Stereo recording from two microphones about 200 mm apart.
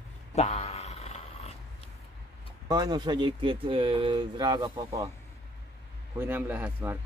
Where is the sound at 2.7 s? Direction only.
20° right (ahead or behind).